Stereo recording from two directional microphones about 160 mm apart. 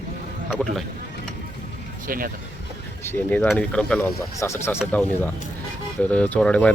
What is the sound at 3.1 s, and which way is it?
Speech, 10° left (ahead or behind).